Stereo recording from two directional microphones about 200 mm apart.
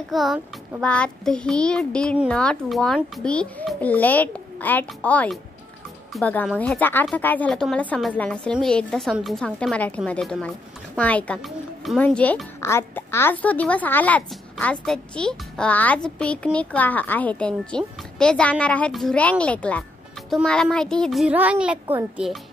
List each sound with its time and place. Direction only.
0.1 s speech: centre (ahead or behind)